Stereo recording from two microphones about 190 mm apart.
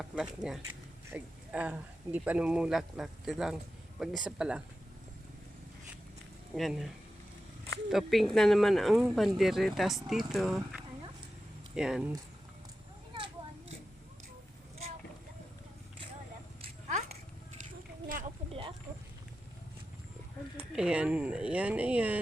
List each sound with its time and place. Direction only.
0.0 s speech: 5° right (ahead or behind)
6.5 s speech: centre (ahead or behind)
18.4 s a sound: 30° right (ahead or behind)
20.7 s speech: 5° right (ahead or behind)